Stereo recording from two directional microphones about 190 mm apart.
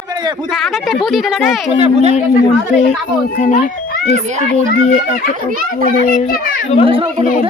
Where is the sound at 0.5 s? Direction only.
Centre (ahead or behind).